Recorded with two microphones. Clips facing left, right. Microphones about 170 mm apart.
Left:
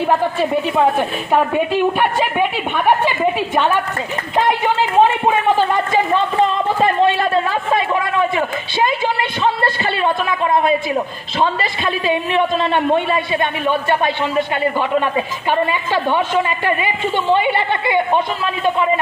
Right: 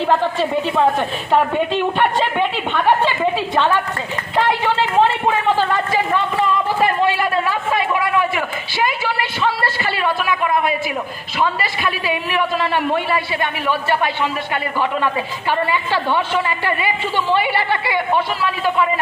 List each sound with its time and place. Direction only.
0.0 s a woman's voice: 10° left (ahead or behind)
4.4 s a sound: 15° left (ahead or behind)
8.2 s a man's voice: 25° left (ahead or behind)